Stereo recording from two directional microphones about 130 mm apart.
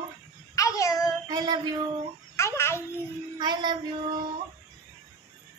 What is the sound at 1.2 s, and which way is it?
Child singing, 30° right (ahead or behind).